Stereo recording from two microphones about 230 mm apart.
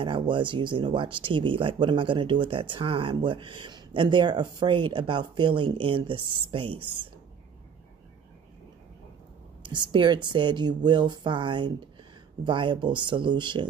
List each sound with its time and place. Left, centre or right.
0.0 s speech: right
9.6 s speech: centre